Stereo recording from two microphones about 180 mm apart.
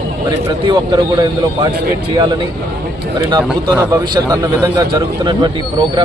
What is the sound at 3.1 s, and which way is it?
A man's voice, 20° right (ahead or behind).